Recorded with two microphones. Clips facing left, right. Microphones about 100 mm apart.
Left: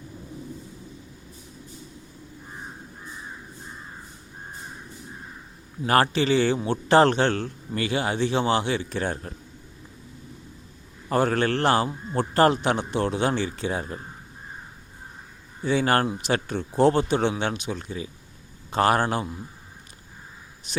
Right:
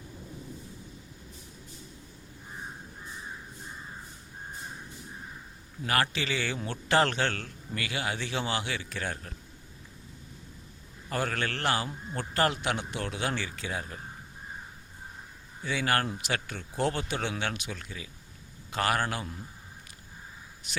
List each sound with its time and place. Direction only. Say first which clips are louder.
5.8 s a man's voice: left 9 dB; 35° left (ahead or behind)
11.1 s a man's voice: left 9 dB; 35° left (ahead or behind)
15.6 s a man's voice: left 7 dB; 35° left (ahead or behind)